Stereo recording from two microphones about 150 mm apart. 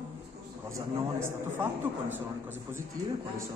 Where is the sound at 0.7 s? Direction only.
20° right (ahead or behind).